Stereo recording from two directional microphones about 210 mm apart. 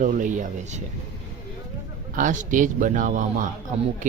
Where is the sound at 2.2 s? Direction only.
40° right (ahead or behind).